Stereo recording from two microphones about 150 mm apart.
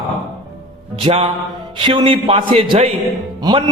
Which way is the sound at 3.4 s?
25° right (ahead or behind).